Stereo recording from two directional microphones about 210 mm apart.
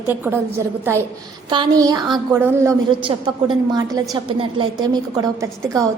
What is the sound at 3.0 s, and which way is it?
A woman's voice, 25° right (ahead or behind).